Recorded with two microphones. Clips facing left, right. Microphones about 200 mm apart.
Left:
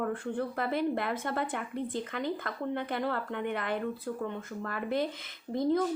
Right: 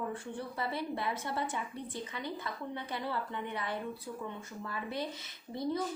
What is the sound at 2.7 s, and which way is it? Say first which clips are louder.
A woman's voice: left 6 dB; 55° left (ahead or behind).